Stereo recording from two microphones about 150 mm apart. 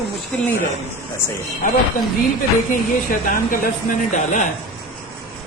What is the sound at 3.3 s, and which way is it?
Speech, 65° left (ahead or behind).